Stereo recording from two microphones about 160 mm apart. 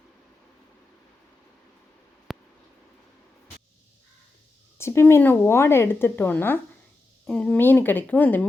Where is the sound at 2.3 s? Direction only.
Centre (ahead or behind).